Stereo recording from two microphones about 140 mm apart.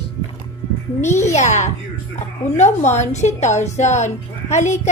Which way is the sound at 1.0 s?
55° left (ahead or behind).